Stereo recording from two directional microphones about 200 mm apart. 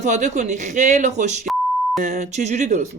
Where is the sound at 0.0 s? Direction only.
35° right (ahead or behind).